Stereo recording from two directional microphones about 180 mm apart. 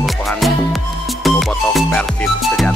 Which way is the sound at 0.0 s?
Centre (ahead or behind).